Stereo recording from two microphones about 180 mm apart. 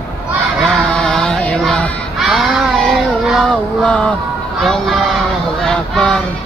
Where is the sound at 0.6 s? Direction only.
5° left (ahead or behind).